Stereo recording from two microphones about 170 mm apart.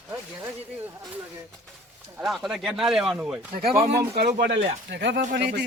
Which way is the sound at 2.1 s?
Centre (ahead or behind).